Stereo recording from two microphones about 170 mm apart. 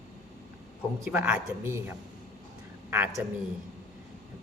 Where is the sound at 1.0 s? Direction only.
10° right (ahead or behind).